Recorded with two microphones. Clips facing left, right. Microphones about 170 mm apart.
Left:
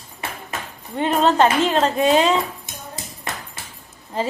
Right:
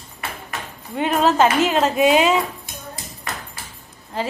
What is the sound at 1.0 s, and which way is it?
A woman's voice, 5° right (ahead or behind).